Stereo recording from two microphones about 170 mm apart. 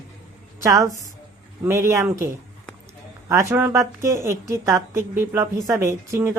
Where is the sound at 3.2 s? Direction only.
15° right (ahead or behind).